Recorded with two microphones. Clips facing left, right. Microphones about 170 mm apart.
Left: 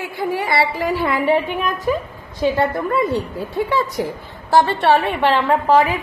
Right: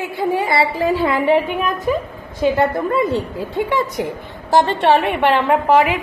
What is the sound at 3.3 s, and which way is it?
A woman's voice, 20° right (ahead or behind).